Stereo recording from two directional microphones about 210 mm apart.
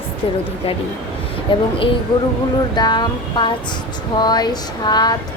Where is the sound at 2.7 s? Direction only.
20° left (ahead or behind).